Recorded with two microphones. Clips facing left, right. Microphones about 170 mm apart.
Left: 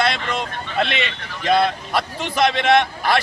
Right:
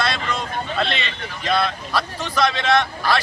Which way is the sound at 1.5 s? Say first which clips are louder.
Left 4 dB; 20° left (ahead or behind).